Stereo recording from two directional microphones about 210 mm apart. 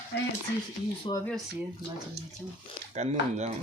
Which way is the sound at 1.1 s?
25° left (ahead or behind).